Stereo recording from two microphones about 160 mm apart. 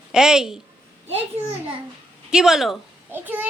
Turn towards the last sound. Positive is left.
turn(degrees=-10)  # may be behind; listen again after turning